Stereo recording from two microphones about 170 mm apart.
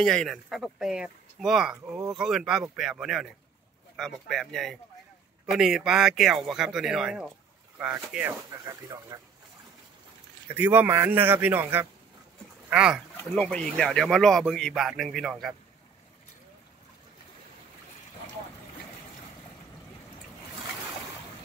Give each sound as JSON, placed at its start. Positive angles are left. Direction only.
{"t": 0.0, "sound": "a man's voice", "side_deg": 0}
{"t": 9.1, "sound": "speech", "side_deg": -20}
{"t": 10.5, "sound": "a man's voice", "side_deg": -10}